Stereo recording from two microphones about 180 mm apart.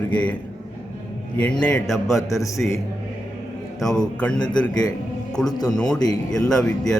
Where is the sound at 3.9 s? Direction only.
5° left (ahead or behind).